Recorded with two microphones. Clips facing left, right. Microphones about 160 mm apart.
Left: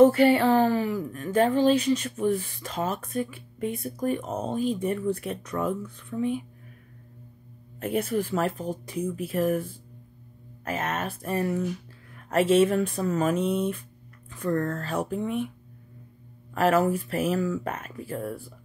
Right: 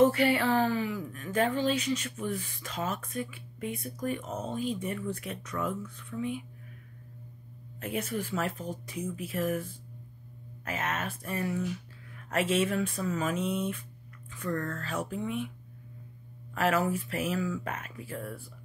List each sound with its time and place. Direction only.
0.0 s speech: 35° left (ahead or behind)
8.0 s speech: 35° left (ahead or behind)
8.9 s speech: 55° left (ahead or behind)
9.3 s speech: 35° left (ahead or behind); by 13.7 s 50° left (ahead or behind)
14.3 s speech: 35° left (ahead or behind)
16.5 s speech: 40° left (ahead or behind)